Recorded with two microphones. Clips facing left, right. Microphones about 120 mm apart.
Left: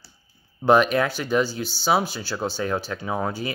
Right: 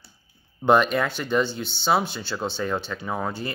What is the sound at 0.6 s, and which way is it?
Speech, 5° left (ahead or behind).